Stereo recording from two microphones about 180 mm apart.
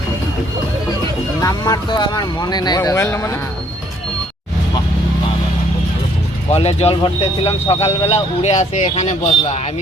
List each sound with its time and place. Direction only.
1.4 s speech: 20° left (ahead or behind)
6.5 s speech: 35° left (ahead or behind)